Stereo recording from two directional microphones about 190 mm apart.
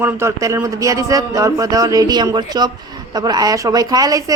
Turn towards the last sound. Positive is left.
turn(degrees=-20)  # may be behind; listen again after turning